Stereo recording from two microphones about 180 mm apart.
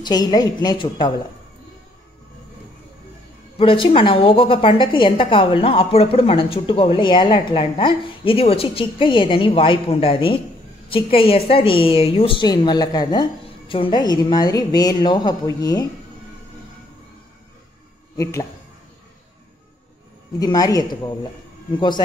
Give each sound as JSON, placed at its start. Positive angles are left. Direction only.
{"t": 0.0, "sound": "a woman's voice", "side_deg": 25}
{"t": 3.5, "sound": "a woman's voice", "side_deg": 30}
{"t": 18.1, "sound": "speech", "side_deg": 15}
{"t": 20.3, "sound": "a woman's voice", "side_deg": 20}